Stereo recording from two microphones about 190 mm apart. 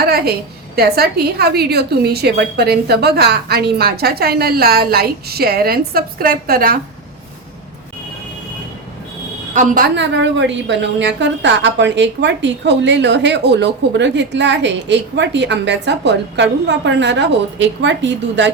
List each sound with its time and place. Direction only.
0.0 s a woman's voice: 55° right (ahead or behind)
9.6 s a woman's voice: 45° right (ahead or behind)
9.9 s a woman's voice: 70° right (ahead or behind)